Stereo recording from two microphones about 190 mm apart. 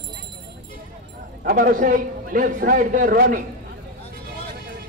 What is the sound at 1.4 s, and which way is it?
A man's voice, 50° right (ahead or behind).